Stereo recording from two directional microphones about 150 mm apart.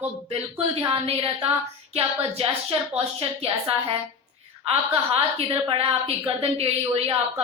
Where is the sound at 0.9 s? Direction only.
40° right (ahead or behind).